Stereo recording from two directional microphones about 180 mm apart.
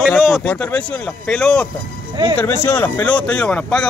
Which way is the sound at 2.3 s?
15° left (ahead or behind).